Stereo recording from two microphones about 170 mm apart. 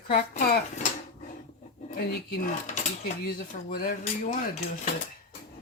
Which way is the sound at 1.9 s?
65° left (ahead or behind).